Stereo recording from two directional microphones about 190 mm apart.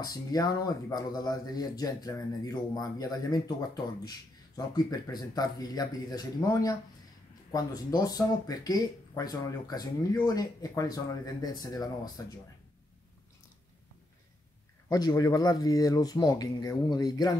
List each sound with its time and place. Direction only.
0.0 s speech: 20° left (ahead or behind)
14.9 s speech: 20° left (ahead or behind)